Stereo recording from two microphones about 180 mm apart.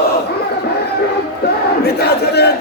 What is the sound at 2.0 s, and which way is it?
Crowd, 65° left (ahead or behind).